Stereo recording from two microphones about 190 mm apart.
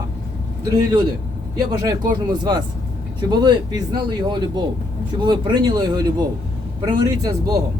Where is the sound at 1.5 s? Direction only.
20° right (ahead or behind).